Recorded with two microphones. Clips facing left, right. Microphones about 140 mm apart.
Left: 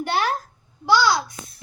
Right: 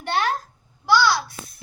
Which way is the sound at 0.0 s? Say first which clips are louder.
Left 1 dB; 10° left (ahead or behind).